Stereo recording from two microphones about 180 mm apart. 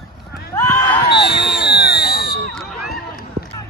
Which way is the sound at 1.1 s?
65° left (ahead or behind).